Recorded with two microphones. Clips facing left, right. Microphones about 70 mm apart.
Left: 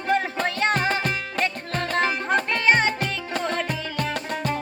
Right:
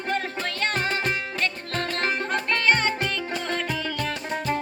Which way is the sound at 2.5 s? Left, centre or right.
Centre.